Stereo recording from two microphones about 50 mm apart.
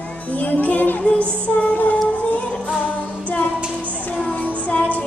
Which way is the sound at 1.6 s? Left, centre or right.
Left.